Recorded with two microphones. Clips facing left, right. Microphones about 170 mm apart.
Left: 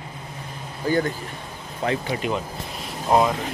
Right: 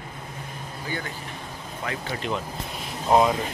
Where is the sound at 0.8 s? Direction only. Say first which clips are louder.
Left 12 dB; 40° left (ahead or behind).